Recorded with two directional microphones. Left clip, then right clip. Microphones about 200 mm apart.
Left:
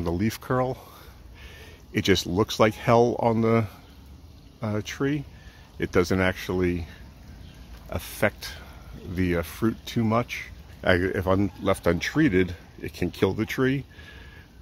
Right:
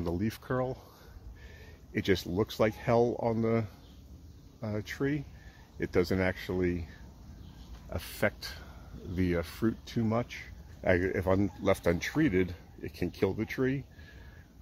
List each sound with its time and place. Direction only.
0.0 s speech: 15° left (ahead or behind)
1.9 s speech: 20° left (ahead or behind)
7.9 s speech: 5° left (ahead or behind)